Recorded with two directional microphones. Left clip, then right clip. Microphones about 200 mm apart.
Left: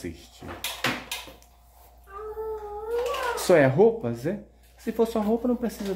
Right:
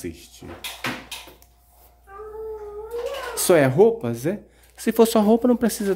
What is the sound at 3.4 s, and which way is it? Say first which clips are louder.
Speech: right 3 dB; 20° right (ahead or behind).